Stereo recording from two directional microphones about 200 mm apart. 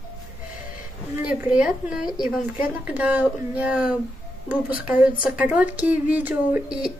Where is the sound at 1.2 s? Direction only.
5° right (ahead or behind).